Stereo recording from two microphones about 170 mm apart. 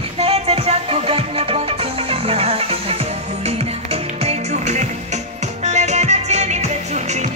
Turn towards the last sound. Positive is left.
turn(degrees=-40)  # may be behind; listen again after turning